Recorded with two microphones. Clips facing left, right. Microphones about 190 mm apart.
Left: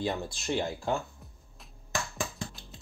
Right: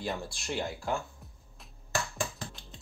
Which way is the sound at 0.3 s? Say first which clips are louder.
Left 4 dB; 25° left (ahead or behind).